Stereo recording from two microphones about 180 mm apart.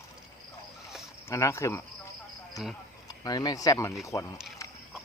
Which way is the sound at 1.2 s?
15° left (ahead or behind).